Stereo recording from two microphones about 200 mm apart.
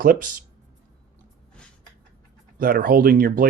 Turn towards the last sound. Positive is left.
turn(degrees=-45)  # may be behind; listen again after turning